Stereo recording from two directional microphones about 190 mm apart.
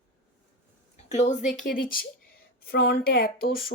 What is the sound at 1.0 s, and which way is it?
Speech, 35° left (ahead or behind).